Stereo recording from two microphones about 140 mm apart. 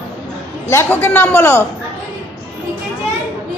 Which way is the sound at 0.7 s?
15° left (ahead or behind).